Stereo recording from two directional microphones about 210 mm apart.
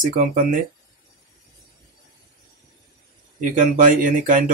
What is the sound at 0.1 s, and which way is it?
Speech, 40° right (ahead or behind).